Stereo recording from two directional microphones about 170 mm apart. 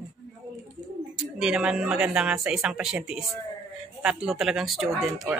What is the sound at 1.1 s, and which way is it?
Speech, 5° right (ahead or behind).